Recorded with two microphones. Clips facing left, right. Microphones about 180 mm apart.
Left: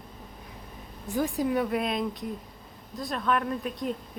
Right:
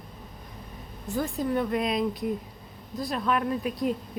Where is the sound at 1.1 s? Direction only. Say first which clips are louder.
Left 1 dB; 15° left (ahead or behind).